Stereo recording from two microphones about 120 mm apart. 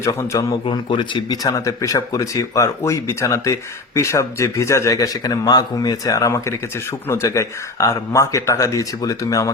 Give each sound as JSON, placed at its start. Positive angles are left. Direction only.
{"t": 0.0, "sound": "speech", "side_deg": 25}
{"t": 0.5, "sound": "speech", "side_deg": 45}